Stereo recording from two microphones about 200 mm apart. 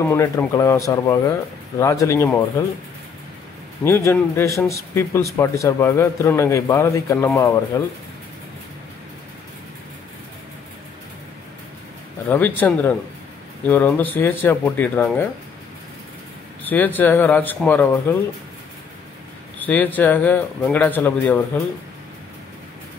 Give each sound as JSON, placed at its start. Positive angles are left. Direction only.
{"t": 0.0, "sound": "speech", "side_deg": 10}
{"t": 3.8, "sound": "speech", "side_deg": 10}
{"t": 12.3, "sound": "speech", "side_deg": 10}
{"t": 16.6, "sound": "speech", "side_deg": 10}
{"t": 19.6, "sound": "speech", "side_deg": 10}